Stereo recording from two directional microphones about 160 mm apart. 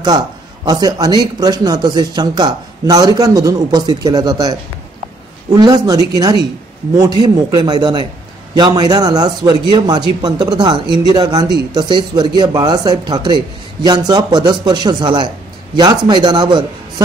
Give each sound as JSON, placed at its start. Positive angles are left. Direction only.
{"t": 0.7, "sound": "speech", "side_deg": -25}
{"t": 5.6, "sound": "speech", "side_deg": -25}
{"t": 7.5, "sound": "speech", "side_deg": -25}